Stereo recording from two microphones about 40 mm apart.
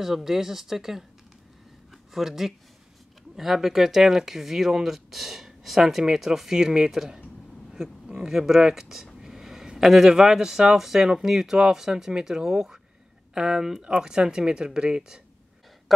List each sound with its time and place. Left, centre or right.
0.0 s speech: centre
2.1 s speech: centre
8.2 s speech: centre
13.8 s speech: right